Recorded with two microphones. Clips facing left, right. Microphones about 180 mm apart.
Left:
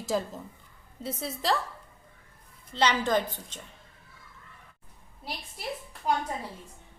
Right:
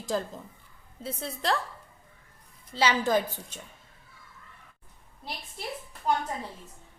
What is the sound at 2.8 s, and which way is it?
Speech, 5° right (ahead or behind).